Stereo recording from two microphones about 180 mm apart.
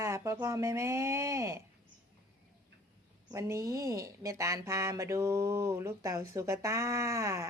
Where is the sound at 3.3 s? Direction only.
15° right (ahead or behind).